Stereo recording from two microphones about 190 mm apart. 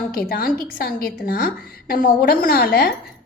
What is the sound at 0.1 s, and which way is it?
Speech, 50° left (ahead or behind).